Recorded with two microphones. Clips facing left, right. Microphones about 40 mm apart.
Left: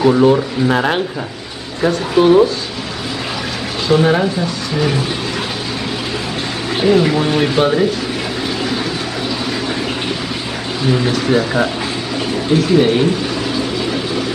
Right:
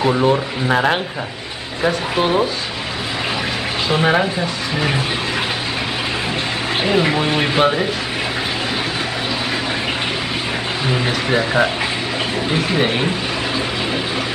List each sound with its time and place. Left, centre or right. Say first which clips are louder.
0.0 s speech: left 4 dB; centre
3.9 s speech: left 4 dB; centre
6.8 s speech: left 5 dB; right
10.9 s speech: left 5 dB; centre